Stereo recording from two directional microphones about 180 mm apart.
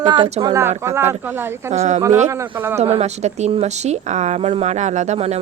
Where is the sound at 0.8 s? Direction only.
15° right (ahead or behind).